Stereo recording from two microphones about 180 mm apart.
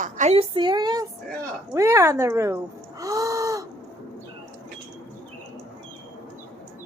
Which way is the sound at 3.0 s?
20° right (ahead or behind).